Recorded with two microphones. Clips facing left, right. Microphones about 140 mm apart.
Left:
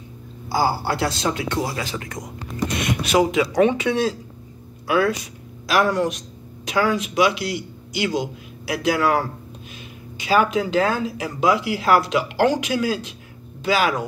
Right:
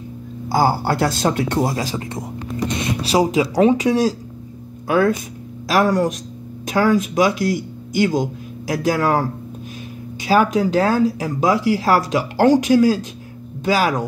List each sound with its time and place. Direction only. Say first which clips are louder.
0.5 s speech: right 4 dB; 45° right (ahead or behind)
10.2 s speech: right 3 dB; 40° right (ahead or behind)